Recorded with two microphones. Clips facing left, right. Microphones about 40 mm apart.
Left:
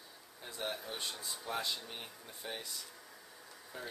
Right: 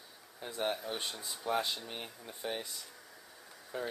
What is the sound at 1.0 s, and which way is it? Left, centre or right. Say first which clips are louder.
Speech: right 4 dB; centre.